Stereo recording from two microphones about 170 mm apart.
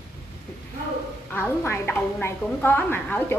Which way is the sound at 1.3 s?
15° left (ahead or behind).